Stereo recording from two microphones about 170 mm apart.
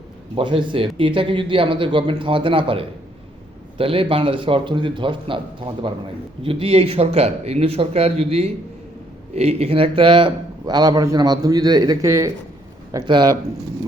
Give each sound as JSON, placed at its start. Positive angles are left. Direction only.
{"t": 0.3, "sound": "a man's voice", "side_deg": -30}